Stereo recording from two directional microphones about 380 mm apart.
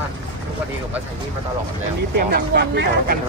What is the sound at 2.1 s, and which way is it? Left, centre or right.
Speech, right.